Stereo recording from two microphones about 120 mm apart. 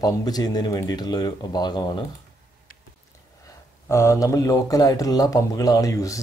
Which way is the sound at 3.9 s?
25° left (ahead or behind).